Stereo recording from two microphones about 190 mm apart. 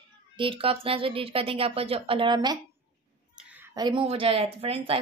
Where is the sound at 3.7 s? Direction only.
25° right (ahead or behind).